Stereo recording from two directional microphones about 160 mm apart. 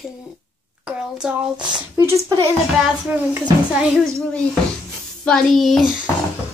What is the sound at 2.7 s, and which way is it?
Speech, 5° right (ahead or behind).